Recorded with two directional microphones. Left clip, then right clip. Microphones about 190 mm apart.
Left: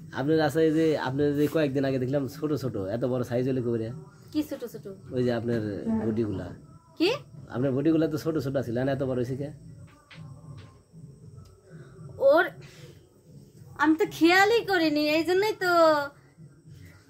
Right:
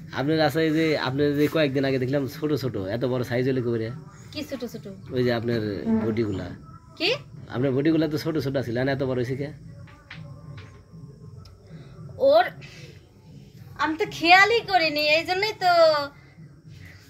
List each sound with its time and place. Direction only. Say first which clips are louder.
0.1 s speech: right 2 dB; 25° left (ahead or behind)
12.2 s a woman's voice: right 2 dB; 25° left (ahead or behind)
13.7 s speech: left 2 dB; 30° left (ahead or behind)